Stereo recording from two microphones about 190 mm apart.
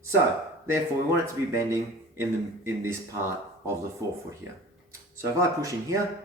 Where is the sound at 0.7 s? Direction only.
15° right (ahead or behind).